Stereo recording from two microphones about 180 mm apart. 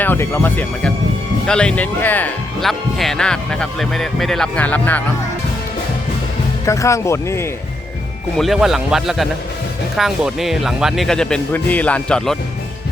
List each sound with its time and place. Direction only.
0.0 s speech: 10° left (ahead or behind)
6.7 s speech: 15° left (ahead or behind)
8.4 s speech: centre (ahead or behind)